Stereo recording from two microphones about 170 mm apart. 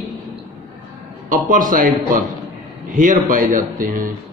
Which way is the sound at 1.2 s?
55° right (ahead or behind).